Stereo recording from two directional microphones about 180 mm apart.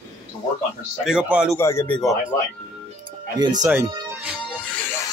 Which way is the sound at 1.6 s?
15° left (ahead or behind).